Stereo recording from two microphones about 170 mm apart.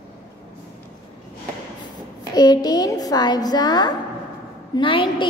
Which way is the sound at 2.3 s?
25° left (ahead or behind).